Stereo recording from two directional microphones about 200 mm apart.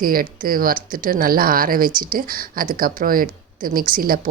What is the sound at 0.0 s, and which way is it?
Speech, 45° right (ahead or behind).